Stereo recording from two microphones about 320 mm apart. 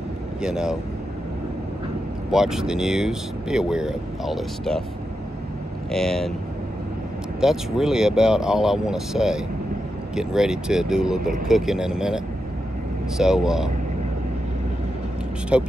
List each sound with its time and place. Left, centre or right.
0.4 s speech: centre
2.3 s speech: centre
5.9 s speech: centre
7.3 s speech: centre
13.2 s speech: centre
15.5 s speech: centre